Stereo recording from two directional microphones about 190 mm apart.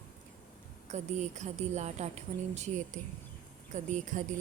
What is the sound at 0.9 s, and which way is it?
A woman's voice, 35° right (ahead or behind).